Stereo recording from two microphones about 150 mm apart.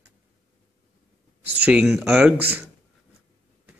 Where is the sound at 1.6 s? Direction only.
5° right (ahead or behind).